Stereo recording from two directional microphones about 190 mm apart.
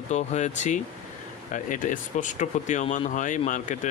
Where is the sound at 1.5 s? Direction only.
45° left (ahead or behind).